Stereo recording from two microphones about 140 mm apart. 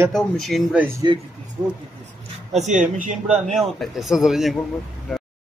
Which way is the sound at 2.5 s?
60° right (ahead or behind).